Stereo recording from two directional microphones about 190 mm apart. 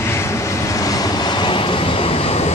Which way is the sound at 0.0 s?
15° left (ahead or behind).